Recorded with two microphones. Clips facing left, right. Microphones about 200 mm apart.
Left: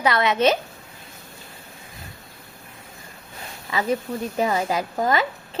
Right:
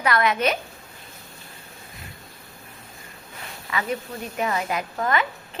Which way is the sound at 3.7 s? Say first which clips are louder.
Left 4 dB; 30° left (ahead or behind).